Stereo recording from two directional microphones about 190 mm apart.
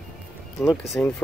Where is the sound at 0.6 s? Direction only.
Centre (ahead or behind).